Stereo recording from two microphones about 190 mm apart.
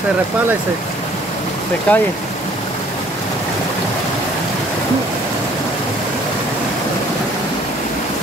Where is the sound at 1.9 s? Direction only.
10° left (ahead or behind).